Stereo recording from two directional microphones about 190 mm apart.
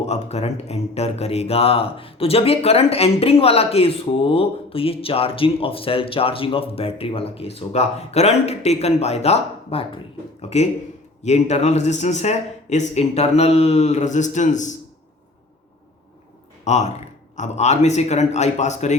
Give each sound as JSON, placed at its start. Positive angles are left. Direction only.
{"t": 0.0, "sound": "speech", "side_deg": 35}
{"t": 11.2, "sound": "speech", "side_deg": 35}
{"t": 16.6, "sound": "speech", "side_deg": 35}